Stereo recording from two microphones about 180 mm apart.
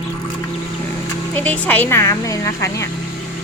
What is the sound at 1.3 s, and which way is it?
Speech, 10° left (ahead or behind).